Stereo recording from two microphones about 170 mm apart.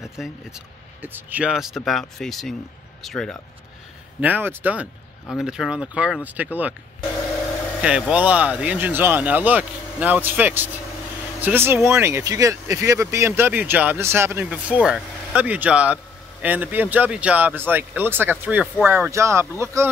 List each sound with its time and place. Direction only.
0.0 s speech: 5° right (ahead or behind)
4.2 s speech: 10° right (ahead or behind)
7.8 s speech: 5° right (ahead or behind)